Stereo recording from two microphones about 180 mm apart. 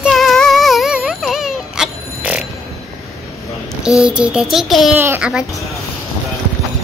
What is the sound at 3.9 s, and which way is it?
A child's voice, 5° right (ahead or behind).